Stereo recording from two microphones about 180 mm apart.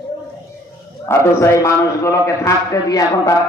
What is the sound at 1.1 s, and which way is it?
A man's voice, 15° left (ahead or behind).